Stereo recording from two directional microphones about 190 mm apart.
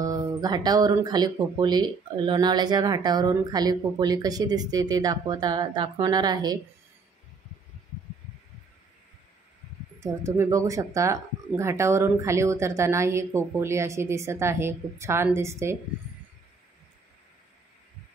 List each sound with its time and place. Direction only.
0.0 s speech: 20° right (ahead or behind)
9.9 s speech: 15° right (ahead or behind)